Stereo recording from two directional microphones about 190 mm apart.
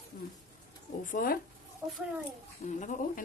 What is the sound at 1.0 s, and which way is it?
Speech, 45° left (ahead or behind).